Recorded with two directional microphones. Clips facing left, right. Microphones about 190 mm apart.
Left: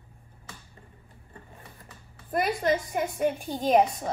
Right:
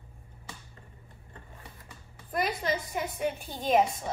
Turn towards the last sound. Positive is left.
turn(degrees=45)  # may be behind; listen again after turning